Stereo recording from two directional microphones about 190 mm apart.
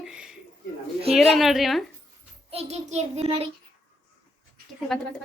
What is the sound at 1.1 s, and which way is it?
Speech, centre (ahead or behind).